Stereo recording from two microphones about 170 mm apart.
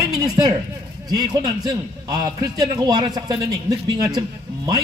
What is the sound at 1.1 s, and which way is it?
A woman's voice, 20° right (ahead or behind).